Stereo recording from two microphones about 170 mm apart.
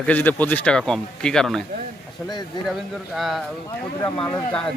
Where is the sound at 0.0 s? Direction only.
10° left (ahead or behind).